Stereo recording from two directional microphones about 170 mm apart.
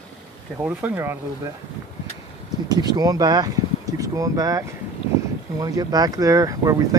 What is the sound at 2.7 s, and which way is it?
Speech, 25° right (ahead or behind).